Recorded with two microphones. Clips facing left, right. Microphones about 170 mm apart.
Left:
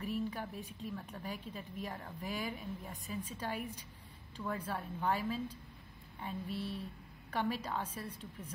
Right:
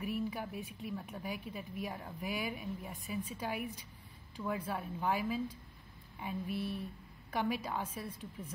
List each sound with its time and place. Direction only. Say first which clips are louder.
0.0 s a woman's voice: right 1 dB; 10° right (ahead or behind)